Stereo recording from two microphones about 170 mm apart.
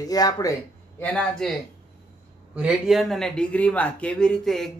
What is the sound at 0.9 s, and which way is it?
Speech, 10° left (ahead or behind).